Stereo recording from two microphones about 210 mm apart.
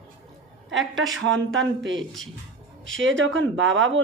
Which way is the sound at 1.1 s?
65° right (ahead or behind).